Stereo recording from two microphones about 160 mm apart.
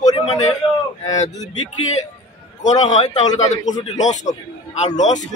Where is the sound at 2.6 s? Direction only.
45° left (ahead or behind).